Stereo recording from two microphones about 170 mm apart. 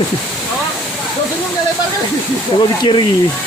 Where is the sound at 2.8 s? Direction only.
25° left (ahead or behind).